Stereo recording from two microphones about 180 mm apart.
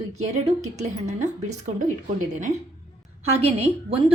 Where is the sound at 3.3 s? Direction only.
35° right (ahead or behind).